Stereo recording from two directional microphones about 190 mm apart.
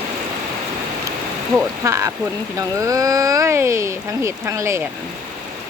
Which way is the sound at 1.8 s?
15° right (ahead or behind).